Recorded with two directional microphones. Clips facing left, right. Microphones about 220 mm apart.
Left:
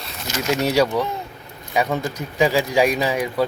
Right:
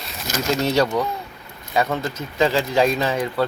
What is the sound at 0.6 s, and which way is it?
Speech, 10° left (ahead or behind).